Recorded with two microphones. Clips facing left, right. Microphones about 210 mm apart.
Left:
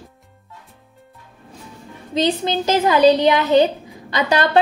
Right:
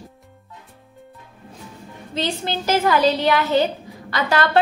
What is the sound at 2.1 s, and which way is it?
A woman's voice, 20° left (ahead or behind).